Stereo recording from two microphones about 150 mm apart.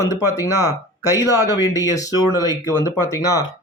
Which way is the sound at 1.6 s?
25° left (ahead or behind).